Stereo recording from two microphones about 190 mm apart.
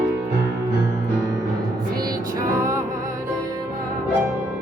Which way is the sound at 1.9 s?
20° right (ahead or behind).